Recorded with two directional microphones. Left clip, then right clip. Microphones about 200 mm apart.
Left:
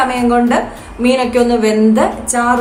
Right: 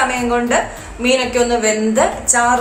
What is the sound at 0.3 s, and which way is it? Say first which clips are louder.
A woman's voice: left 3 dB; 50° left (ahead or behind).